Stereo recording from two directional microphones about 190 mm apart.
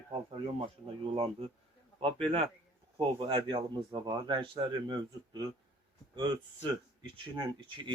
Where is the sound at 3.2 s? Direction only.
25° right (ahead or behind).